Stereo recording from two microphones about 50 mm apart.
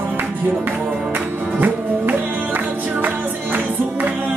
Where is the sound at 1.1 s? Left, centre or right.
Right.